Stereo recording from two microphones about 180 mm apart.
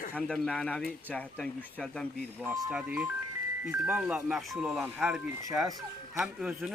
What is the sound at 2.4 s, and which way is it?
Speech, 15° right (ahead or behind).